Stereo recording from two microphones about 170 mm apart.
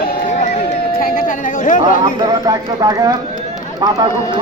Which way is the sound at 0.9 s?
55° left (ahead or behind).